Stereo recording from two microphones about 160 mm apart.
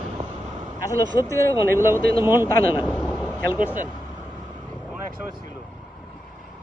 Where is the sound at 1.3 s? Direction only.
15° left (ahead or behind).